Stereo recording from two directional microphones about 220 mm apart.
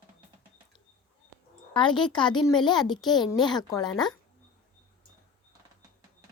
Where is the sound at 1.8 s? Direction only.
20° left (ahead or behind).